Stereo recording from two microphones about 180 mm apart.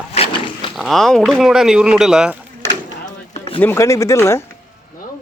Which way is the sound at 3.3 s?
30° left (ahead or behind).